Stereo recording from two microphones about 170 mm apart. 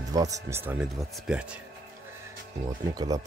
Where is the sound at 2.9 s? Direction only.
20° right (ahead or behind).